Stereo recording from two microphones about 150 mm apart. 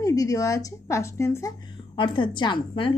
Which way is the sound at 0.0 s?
20° left (ahead or behind).